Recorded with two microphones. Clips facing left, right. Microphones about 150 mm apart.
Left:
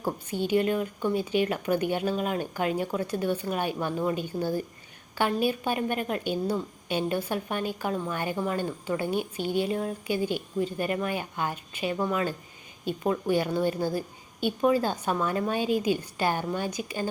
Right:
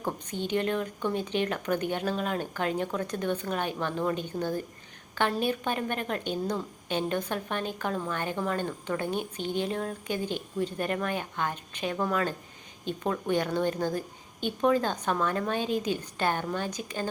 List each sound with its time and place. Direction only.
0.0 s a woman's voice: 10° left (ahead or behind)